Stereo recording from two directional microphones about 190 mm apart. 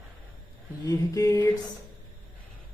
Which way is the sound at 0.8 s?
20° left (ahead or behind).